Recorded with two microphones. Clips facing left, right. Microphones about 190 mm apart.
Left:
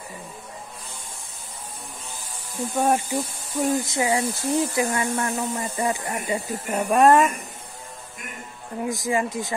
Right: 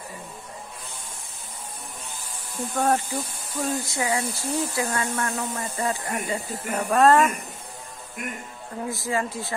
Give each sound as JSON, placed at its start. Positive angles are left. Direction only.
{"t": 2.7, "sound": "speech", "side_deg": 15}
{"t": 8.8, "sound": "speech", "side_deg": 15}